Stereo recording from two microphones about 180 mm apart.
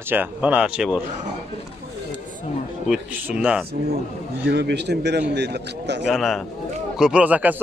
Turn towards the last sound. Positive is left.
turn(degrees=-10)  # may be behind; listen again after turning